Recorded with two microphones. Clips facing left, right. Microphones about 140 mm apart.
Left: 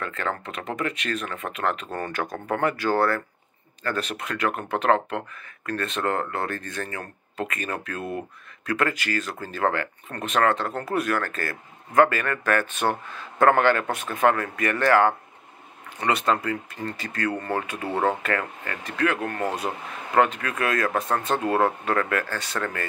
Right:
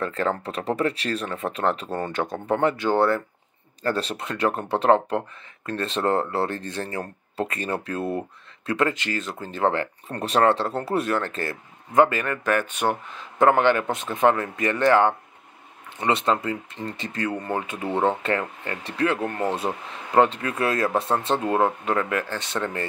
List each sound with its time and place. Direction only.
0.0 s speech: 30° right (ahead or behind)